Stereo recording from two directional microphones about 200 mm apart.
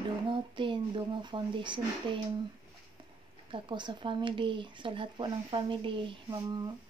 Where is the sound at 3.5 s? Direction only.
25° right (ahead or behind).